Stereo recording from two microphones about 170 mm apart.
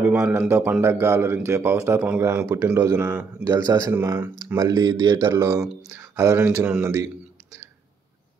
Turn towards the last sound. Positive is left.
turn(degrees=-15)  # may be behind; listen again after turning